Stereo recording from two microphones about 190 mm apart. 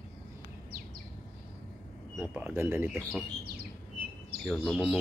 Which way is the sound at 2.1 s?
10° right (ahead or behind).